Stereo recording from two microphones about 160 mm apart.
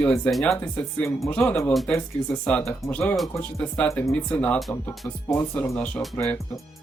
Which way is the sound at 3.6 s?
10° left (ahead or behind).